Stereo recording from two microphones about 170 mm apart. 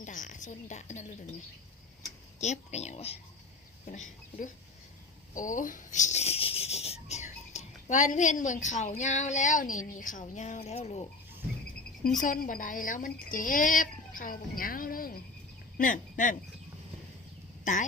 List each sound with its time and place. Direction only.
0.0 s a sound: 50° left (ahead or behind)
2.4 s speech: 40° left (ahead or behind)
12.2 s speech: 50° left (ahead or behind)
17.6 s speech: 45° left (ahead or behind)